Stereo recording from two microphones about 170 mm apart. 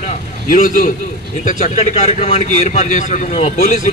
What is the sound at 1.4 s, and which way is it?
A man's voice, 40° left (ahead or behind).